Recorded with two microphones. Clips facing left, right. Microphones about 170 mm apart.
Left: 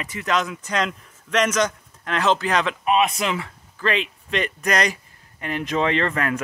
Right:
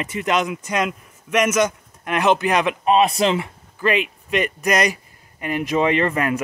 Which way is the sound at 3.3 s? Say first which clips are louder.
Right 5 dB; 15° right (ahead or behind).